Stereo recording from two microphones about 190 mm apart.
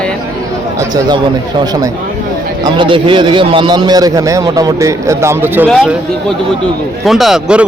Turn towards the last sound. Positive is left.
turn(degrees=-5)  # may be behind; listen again after turning